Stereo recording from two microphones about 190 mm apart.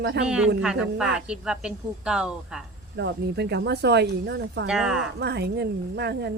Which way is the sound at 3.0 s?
60° right (ahead or behind).